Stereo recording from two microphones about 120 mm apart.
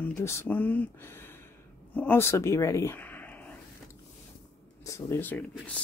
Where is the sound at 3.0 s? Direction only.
15° left (ahead or behind).